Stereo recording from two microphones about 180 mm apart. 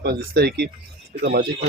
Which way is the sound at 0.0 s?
65° right (ahead or behind).